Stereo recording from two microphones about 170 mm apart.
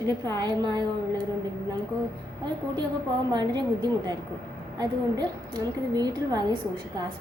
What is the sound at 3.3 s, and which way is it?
A woman's voice, 25° right (ahead or behind).